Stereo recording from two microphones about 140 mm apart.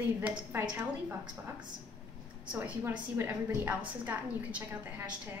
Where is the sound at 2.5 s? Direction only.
10° right (ahead or behind).